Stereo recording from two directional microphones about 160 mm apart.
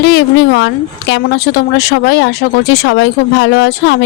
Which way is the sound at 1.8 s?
90° left.